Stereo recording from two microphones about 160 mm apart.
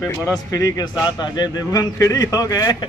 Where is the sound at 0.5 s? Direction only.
20° left (ahead or behind).